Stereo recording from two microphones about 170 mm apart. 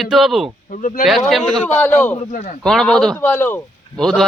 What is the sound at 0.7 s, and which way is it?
Speech, 50° left (ahead or behind).